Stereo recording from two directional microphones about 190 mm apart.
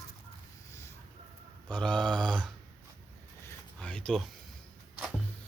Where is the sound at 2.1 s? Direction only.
25° right (ahead or behind).